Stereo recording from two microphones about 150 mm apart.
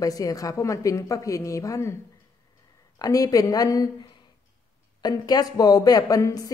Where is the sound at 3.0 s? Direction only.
25° left (ahead or behind).